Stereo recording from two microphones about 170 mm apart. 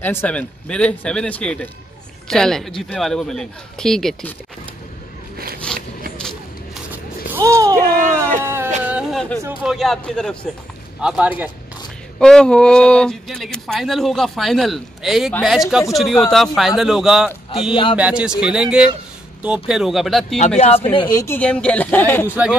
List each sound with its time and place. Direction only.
0.0 s a man's voice: 10° left (ahead or behind)
5.7 s a sound: 5° left (ahead or behind)
7.3 s a sound: 15° right (ahead or behind)
9.6 s a man's voice: centre (ahead or behind)
12.2 s speech: 5° left (ahead or behind)
20.3 s speech: 40° left (ahead or behind)
20.9 s a woman's voice: 25° left (ahead or behind)
21.4 s a man's voice: 5° left (ahead or behind)
22.3 s a man's voice: 5° right (ahead or behind)